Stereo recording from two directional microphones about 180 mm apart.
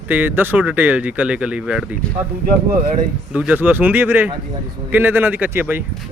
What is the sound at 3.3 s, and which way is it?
A man's voice, 5° right (ahead or behind).